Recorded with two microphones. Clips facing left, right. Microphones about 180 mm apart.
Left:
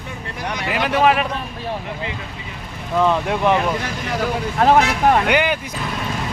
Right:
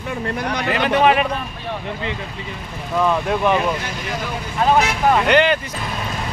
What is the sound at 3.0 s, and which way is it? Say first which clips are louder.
Speech: even; 15° left (ahead or behind).